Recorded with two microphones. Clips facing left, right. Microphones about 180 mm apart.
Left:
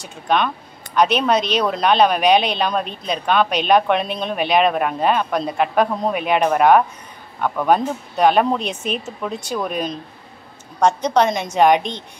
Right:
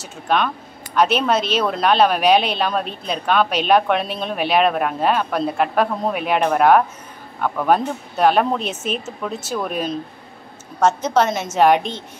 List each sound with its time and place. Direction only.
0.0 s a woman's voice: centre (ahead or behind)